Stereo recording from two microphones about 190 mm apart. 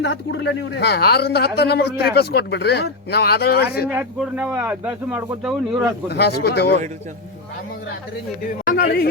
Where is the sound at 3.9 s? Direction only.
10° right (ahead or behind).